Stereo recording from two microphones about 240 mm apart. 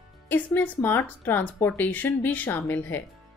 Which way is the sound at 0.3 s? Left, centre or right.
Centre.